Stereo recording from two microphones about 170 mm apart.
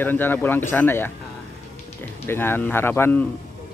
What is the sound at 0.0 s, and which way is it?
Speech, 10° left (ahead or behind).